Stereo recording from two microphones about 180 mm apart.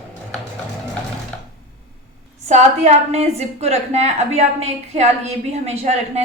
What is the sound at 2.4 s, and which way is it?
A woman's voice, 40° right (ahead or behind).